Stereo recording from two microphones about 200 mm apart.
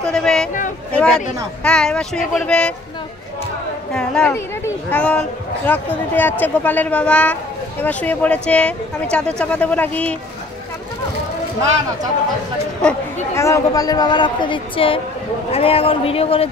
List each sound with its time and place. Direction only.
0.0 s speech: 5° left (ahead or behind)
3.9 s speech: 5° left (ahead or behind)
12.8 s speech: 15° left (ahead or behind); by 16.4 s 30° left (ahead or behind)